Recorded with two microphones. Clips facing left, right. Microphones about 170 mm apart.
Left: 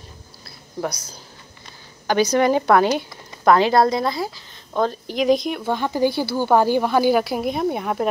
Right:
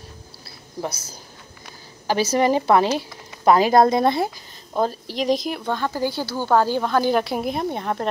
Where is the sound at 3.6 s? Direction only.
20° right (ahead or behind).